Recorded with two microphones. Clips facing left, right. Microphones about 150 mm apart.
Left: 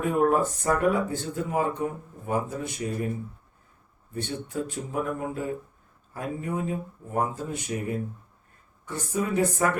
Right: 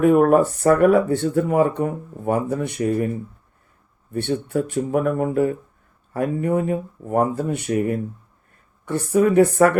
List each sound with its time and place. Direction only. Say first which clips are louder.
0.0 s speech: right 8 dB; 65° right (ahead or behind)
4.1 s speech: right 10 dB; 65° right (ahead or behind)